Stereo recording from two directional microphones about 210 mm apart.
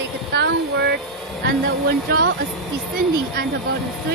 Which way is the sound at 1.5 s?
45° right (ahead or behind).